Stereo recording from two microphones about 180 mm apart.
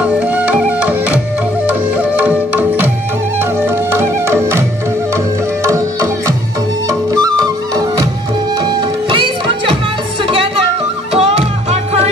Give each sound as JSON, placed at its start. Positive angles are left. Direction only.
{"t": 0.0, "sound": "music", "side_deg": -10}
{"t": 9.1, "sound": "music", "side_deg": -30}